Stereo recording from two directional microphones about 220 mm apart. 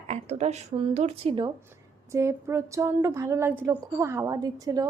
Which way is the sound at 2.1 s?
10° right (ahead or behind).